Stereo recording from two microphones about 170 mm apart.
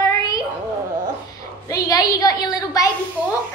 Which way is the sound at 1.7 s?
20° left (ahead or behind).